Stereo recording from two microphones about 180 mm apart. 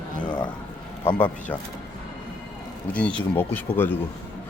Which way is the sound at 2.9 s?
5° left (ahead or behind).